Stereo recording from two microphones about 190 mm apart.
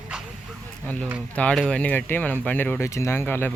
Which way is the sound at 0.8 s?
5° left (ahead or behind).